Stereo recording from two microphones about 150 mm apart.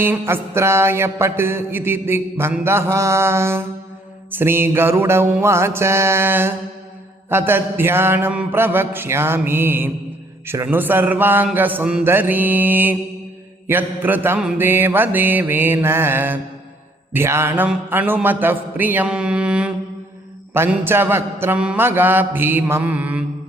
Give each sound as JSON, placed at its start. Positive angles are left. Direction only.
{"t": 0.0, "sound": "mantra", "side_deg": -15}